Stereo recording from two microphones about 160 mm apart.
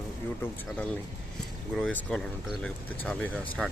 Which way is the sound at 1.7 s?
5° left (ahead or behind).